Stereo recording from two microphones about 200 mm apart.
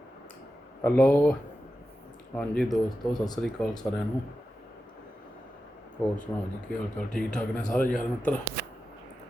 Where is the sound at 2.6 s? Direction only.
20° left (ahead or behind).